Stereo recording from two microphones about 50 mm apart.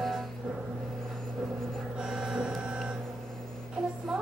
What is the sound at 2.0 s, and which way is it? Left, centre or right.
Printer, centre.